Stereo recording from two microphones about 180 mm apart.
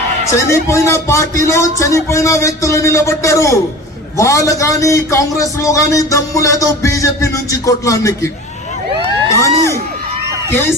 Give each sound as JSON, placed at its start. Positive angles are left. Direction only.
{"t": 0.3, "sound": "a man's voice", "side_deg": 15}
{"t": 9.0, "sound": "crowd", "side_deg": 15}